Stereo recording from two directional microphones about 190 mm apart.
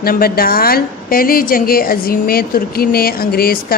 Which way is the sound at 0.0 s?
50° left (ahead or behind).